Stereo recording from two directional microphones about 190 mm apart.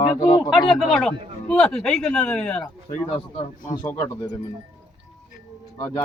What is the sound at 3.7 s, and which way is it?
Speech, 25° left (ahead or behind).